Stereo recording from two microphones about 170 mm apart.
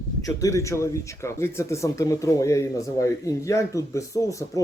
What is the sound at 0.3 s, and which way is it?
Speech, 20° left (ahead or behind).